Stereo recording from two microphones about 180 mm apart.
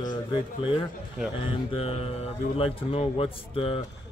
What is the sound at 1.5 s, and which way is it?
Speech, 30° left (ahead or behind).